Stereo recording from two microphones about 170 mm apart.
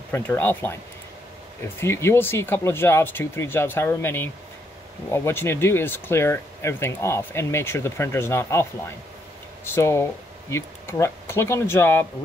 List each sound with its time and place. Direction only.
0.1 s speech: 10° left (ahead or behind)
1.8 s speech: 15° left (ahead or behind)